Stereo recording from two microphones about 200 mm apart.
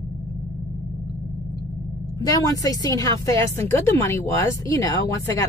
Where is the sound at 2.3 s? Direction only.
20° left (ahead or behind).